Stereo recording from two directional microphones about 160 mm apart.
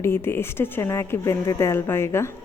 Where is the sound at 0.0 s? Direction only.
15° left (ahead or behind).